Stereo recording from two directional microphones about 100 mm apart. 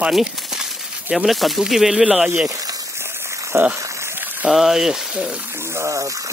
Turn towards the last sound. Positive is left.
turn(degrees=-35)  # may be behind; listen again after turning